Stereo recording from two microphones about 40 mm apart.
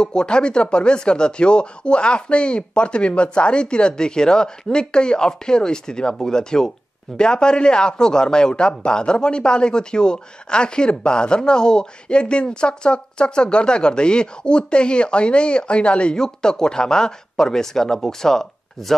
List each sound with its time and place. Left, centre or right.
0.0 s speech: left
16.2 s speech: centre